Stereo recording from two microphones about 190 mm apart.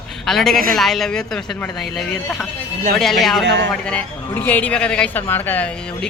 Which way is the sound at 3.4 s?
70° right (ahead or behind).